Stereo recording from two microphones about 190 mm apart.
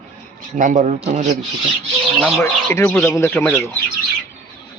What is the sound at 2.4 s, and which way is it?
Speech, 15° left (ahead or behind).